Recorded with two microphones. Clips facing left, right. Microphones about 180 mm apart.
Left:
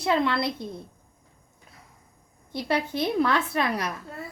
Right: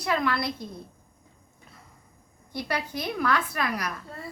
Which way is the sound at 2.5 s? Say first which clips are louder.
Left 4 dB; 25° left (ahead or behind).